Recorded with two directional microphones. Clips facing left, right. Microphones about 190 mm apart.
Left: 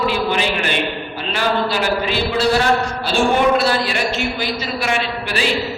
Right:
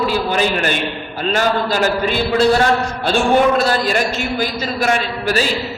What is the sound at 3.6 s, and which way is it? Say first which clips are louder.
A man's voice: right 2 dB; 45° right (ahead or behind).